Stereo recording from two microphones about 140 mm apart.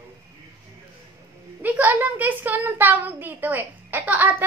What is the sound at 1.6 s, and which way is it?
A child's voice, 10° right (ahead or behind).